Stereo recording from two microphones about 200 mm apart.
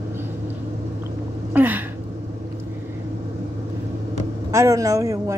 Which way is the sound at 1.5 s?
10° right (ahead or behind).